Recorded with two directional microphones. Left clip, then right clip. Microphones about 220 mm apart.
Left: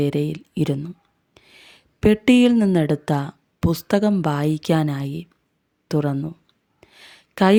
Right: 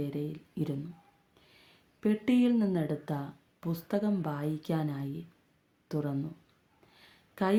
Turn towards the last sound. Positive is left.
turn(degrees=40)  # may be behind; listen again after turning